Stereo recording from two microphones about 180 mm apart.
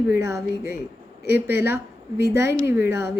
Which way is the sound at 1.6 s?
15° right (ahead or behind).